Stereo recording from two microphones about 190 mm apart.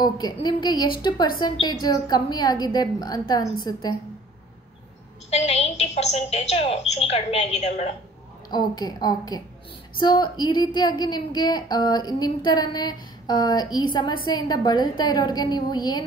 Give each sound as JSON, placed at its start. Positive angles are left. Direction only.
{"t": 0.0, "sound": "a woman's voice", "side_deg": 20}
{"t": 5.3, "sound": "a woman's voice", "side_deg": 35}
{"t": 8.5, "sound": "a woman's voice", "side_deg": 20}